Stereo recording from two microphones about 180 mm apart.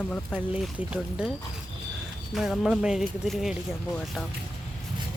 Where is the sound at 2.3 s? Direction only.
Centre (ahead or behind).